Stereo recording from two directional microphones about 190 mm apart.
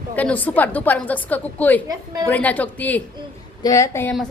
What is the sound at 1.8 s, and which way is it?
Speech, 20° right (ahead or behind).